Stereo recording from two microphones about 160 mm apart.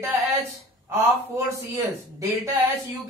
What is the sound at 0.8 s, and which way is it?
A man's voice, 20° right (ahead or behind).